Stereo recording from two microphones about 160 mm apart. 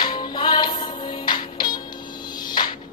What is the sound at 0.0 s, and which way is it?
Music, 25° left (ahead or behind).